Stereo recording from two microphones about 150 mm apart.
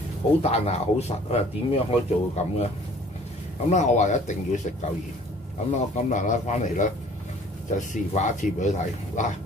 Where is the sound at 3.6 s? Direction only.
50° left (ahead or behind).